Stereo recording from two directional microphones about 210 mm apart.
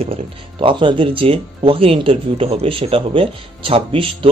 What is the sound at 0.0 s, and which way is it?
Speech, 25° right (ahead or behind).